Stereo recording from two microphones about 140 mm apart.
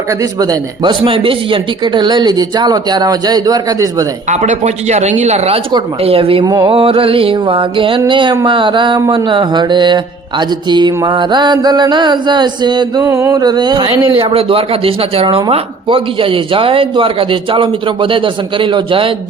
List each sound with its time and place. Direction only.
0.1 s speech: 25° right (ahead or behind)
4.3 s speech: 55° right (ahead or behind); by 13.1 s 30° right (ahead or behind)
13.1 s speech: 20° right (ahead or behind); by 19.1 s 40° right (ahead or behind)